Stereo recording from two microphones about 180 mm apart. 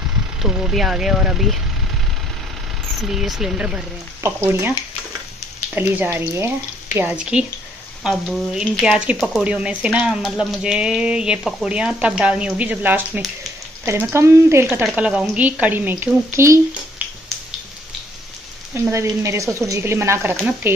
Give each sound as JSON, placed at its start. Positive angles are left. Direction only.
{"t": 0.4, "sound": "speech", "side_deg": 0}
{"t": 3.0, "sound": "speech", "side_deg": 0}
{"t": 5.8, "sound": "speech", "side_deg": -10}
{"t": 18.8, "sound": "speech", "side_deg": -15}